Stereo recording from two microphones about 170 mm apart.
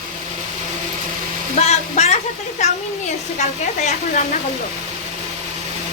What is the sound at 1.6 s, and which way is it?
Speech, 40° left (ahead or behind).